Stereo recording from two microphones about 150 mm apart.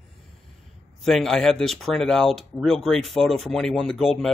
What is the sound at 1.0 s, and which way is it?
Speech, centre (ahead or behind).